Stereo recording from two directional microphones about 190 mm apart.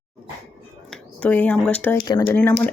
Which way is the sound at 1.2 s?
5° left (ahead or behind).